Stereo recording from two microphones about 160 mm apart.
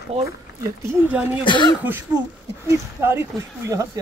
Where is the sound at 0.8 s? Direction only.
10° right (ahead or behind).